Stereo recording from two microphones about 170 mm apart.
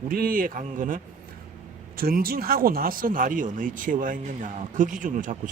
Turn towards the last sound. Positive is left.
turn(degrees=-50)  # may be behind; listen again after turning